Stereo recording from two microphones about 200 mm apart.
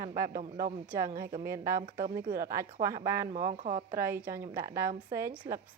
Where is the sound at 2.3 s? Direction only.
45° right (ahead or behind).